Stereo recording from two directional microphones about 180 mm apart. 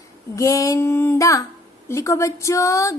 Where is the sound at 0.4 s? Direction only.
20° left (ahead or behind).